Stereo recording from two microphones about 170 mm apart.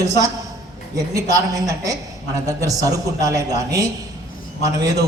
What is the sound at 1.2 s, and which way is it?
A man's voice, 20° right (ahead or behind).